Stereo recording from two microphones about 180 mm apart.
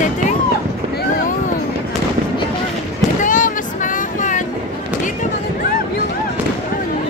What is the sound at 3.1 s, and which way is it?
Vehicle, 45° left (ahead or behind).